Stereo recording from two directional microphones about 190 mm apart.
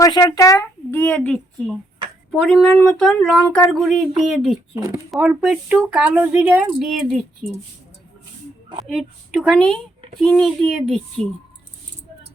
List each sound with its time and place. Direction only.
0.0 s speech: 20° left (ahead or behind); by 3.9 s centre (ahead or behind)
5.1 s speech: 5° right (ahead or behind)
8.8 s speech: 5° right (ahead or behind)